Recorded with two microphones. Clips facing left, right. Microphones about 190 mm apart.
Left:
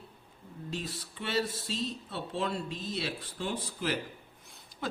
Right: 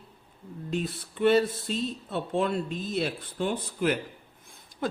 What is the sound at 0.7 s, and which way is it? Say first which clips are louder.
A man's voice: right 8 dB; 55° right (ahead or behind).